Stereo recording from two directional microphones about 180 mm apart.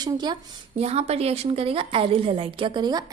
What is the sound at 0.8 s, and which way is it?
A woman's voice, 35° right (ahead or behind).